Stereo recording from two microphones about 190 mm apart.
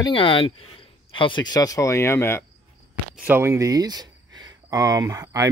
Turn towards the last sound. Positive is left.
turn(degrees=-15)  # may be behind; listen again after turning